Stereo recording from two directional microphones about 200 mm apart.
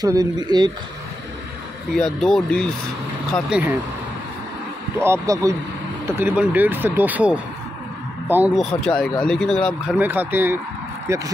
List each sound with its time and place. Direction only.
0.0 s speech: 20° right (ahead or behind)
2.0 s speech: centre (ahead or behind)
4.9 s speech: 15° right (ahead or behind)
8.6 s speech: 5° left (ahead or behind)
9.9 s speech: 10° right (ahead or behind)